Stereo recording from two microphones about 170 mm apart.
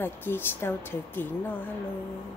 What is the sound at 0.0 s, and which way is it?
A woman's voice, 10° left (ahead or behind).